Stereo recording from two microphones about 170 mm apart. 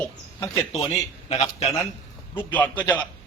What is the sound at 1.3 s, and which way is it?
Speech, 40° left (ahead or behind).